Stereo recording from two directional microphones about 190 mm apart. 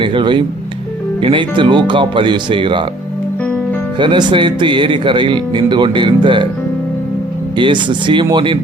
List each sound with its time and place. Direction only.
0.0 s speech: 25° right (ahead or behind)
3.9 s speech: 25° right (ahead or behind)
7.5 s speech: 25° right (ahead or behind)